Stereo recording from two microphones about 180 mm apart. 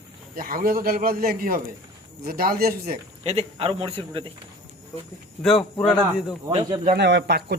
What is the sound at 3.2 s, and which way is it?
A man's voice, 35° right (ahead or behind).